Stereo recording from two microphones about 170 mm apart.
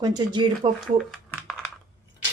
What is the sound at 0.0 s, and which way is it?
Speech, 25° right (ahead or behind).